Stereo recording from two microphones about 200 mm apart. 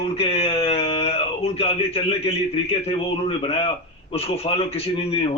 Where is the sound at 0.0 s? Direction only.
30° left (ahead or behind).